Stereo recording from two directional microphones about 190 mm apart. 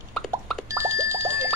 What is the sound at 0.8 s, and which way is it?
Alarm clock, 15° right (ahead or behind).